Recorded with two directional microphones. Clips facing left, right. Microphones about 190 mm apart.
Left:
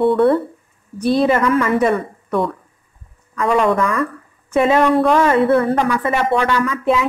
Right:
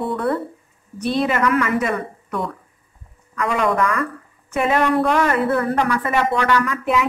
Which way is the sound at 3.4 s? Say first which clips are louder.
Left 4 dB; 25° left (ahead or behind).